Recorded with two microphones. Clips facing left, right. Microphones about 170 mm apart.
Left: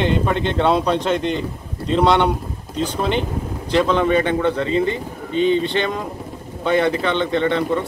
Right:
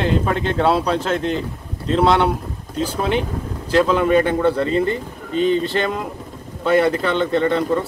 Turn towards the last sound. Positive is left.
turn(degrees=-5)  # may be behind; listen again after turning